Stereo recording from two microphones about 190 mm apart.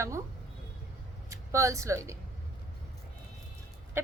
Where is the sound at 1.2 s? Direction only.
15° right (ahead or behind).